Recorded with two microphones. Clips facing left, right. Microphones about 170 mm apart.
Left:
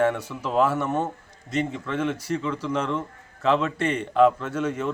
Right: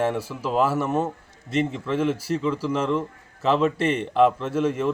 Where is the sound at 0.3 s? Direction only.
5° right (ahead or behind).